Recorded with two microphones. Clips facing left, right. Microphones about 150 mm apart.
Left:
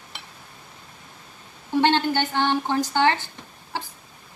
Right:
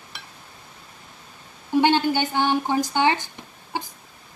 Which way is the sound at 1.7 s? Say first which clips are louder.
Right 1 dB; 10° right (ahead or behind).